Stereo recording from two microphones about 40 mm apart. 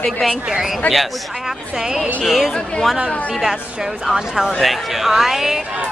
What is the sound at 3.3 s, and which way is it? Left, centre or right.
A woman's voice, centre.